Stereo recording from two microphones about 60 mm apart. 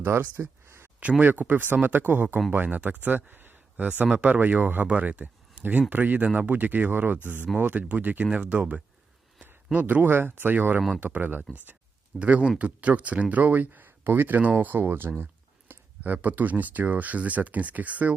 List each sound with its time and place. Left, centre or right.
0.1 s speech: right
1.2 s speech: right
12.2 s speech: centre